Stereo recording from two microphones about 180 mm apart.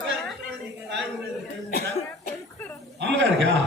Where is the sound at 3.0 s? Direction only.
80° right.